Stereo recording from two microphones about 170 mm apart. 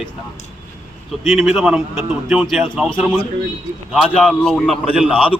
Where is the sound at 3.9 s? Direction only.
5° left (ahead or behind).